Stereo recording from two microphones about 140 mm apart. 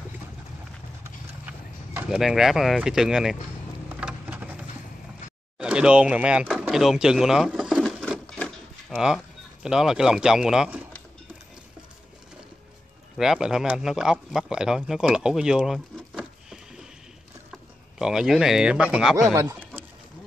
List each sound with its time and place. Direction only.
2.0 s speech: 5° right (ahead or behind)
3.9 s a sound: 10° right (ahead or behind)
5.6 s speech: 5° right (ahead or behind)
6.6 s drawer open or close: centre (ahead or behind)
8.4 s a sound: centre (ahead or behind)
13.2 s speech: 5° right (ahead or behind)
17.9 s speech: 5° right (ahead or behind)
19.3 s speech: 20° right (ahead or behind)